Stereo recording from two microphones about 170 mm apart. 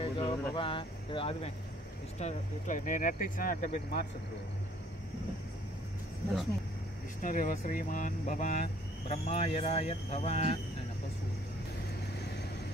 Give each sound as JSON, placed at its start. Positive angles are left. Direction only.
{"t": 0.0, "sound": "a sound", "side_deg": 30}
{"t": 2.1, "sound": "speech", "side_deg": 45}
{"t": 7.2, "sound": "speech", "side_deg": 50}